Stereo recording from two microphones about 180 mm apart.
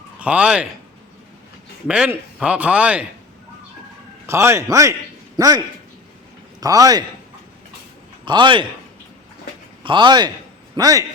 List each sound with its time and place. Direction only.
0.2 s speech: 5° right (ahead or behind)
1.9 s speech: 5° right (ahead or behind)
4.3 s a man's voice: 15° right (ahead or behind)
8.2 s a man's voice: 25° right (ahead or behind)
9.8 s a man's voice: 25° right (ahead or behind)